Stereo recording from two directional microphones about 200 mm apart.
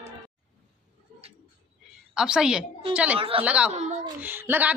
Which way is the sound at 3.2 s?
30° right (ahead or behind).